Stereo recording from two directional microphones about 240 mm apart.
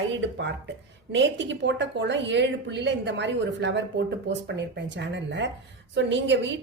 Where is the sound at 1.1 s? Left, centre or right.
Right.